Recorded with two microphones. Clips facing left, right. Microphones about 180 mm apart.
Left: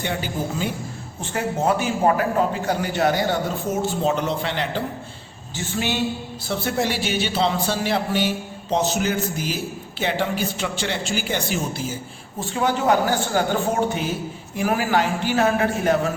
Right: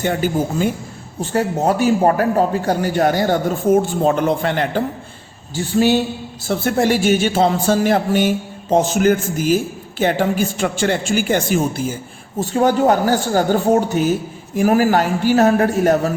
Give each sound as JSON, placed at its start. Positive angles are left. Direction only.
{"t": 0.0, "sound": "speech", "side_deg": -45}
{"t": 5.5, "sound": "speech", "side_deg": -40}
{"t": 6.5, "sound": "speech", "side_deg": -50}